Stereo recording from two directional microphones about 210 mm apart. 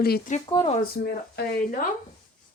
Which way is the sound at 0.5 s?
25° left (ahead or behind).